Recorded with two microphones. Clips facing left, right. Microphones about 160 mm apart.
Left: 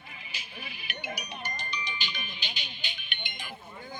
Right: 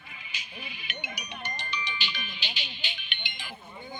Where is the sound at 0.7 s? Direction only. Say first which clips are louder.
Left 5 dB; 35° left (ahead or behind).